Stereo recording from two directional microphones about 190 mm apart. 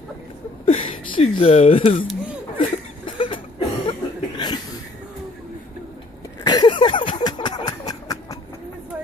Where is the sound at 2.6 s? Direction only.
25° left (ahead or behind).